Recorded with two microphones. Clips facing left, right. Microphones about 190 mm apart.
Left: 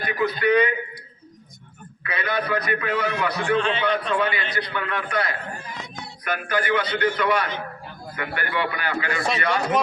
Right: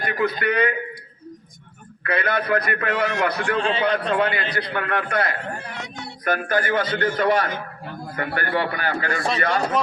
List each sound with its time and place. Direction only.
0.0 s a man's voice: 50° right (ahead or behind)
2.0 s a man's voice: 55° right (ahead or behind)
3.6 s a man's voice: 35° right (ahead or behind)
4.2 s a man's voice: 55° right (ahead or behind); by 6.1 s 75° right (ahead or behind)
6.2 s a man's voice: 45° right (ahead or behind)